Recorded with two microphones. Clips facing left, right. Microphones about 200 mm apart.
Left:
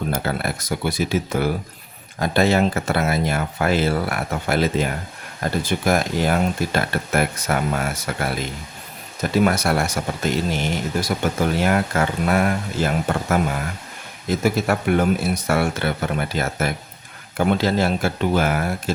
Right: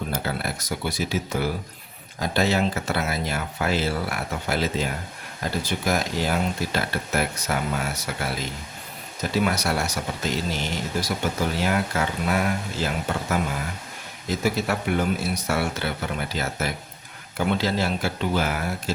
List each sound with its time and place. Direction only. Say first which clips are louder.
0.1 s speech: left 4 dB; 55° left (ahead or behind)
14.4 s speech: left 4 dB; 55° left (ahead or behind)